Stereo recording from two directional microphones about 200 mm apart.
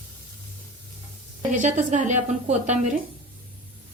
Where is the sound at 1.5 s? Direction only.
40° right (ahead or behind).